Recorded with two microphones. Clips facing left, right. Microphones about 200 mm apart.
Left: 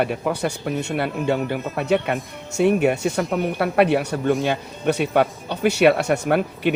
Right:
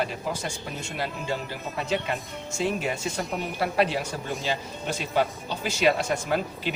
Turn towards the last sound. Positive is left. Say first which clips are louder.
# left 8 dB
turn(degrees=65)  # may be behind; listen again after turning